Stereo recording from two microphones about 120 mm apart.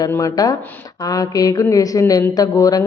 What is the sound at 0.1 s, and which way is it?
A woman's voice, 25° left (ahead or behind).